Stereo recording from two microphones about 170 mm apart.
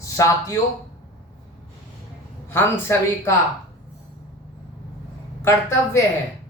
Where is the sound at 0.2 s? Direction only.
20° left (ahead or behind).